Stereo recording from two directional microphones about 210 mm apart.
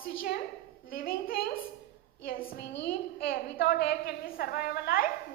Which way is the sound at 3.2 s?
45° left (ahead or behind).